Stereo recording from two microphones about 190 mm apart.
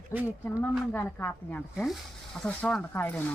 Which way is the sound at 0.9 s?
10° left (ahead or behind).